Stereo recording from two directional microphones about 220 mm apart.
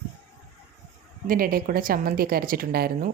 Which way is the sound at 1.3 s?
40° right (ahead or behind).